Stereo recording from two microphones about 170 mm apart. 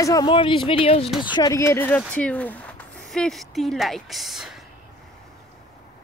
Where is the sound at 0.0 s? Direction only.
20° left (ahead or behind).